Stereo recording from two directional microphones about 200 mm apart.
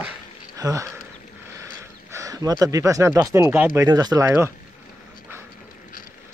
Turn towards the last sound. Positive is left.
turn(degrees=-15)  # may be behind; listen again after turning